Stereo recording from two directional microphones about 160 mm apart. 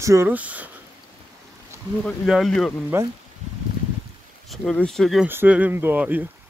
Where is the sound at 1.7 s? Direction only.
20° right (ahead or behind).